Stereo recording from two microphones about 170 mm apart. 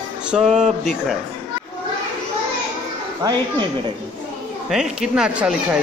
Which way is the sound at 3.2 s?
25° right (ahead or behind).